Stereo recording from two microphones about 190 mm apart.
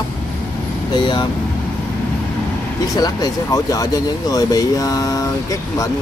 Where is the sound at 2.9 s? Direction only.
20° left (ahead or behind).